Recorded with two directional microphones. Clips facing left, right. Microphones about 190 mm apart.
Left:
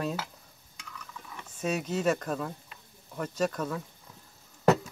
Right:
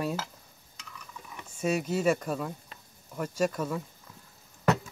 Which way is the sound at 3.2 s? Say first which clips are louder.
Right 1 dB; 5° right (ahead or behind).